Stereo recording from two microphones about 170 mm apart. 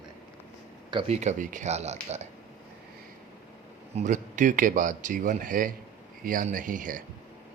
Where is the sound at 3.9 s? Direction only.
45° right (ahead or behind).